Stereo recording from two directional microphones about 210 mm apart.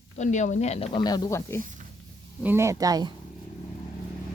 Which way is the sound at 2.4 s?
10° right (ahead or behind).